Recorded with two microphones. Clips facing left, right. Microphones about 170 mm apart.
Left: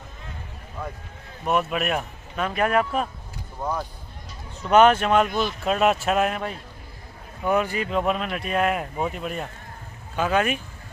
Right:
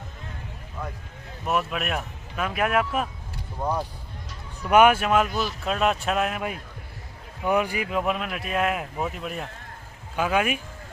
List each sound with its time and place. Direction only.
1.4 s speech: centre (ahead or behind)
7.4 s speech: 15° right (ahead or behind)